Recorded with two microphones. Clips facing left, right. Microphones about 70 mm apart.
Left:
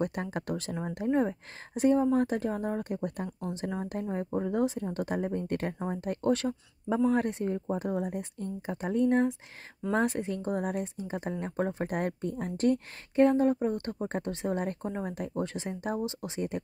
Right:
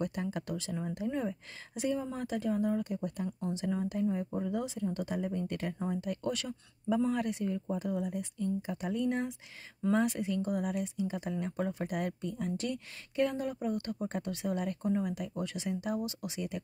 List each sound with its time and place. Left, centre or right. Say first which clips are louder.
0.0 s speech: left 3 dB; left